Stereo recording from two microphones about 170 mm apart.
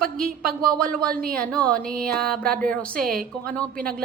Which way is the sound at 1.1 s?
60° right (ahead or behind).